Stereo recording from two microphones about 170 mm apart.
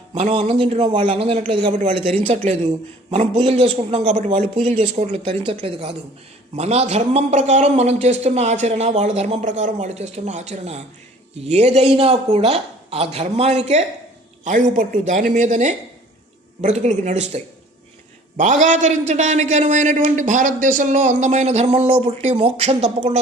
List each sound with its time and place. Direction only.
0.1 s a man's voice: 40° right (ahead or behind)